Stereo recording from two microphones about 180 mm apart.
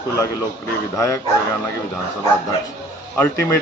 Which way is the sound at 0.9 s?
15° left (ahead or behind).